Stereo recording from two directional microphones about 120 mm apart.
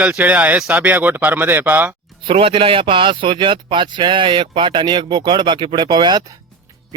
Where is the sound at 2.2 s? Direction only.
50° right (ahead or behind).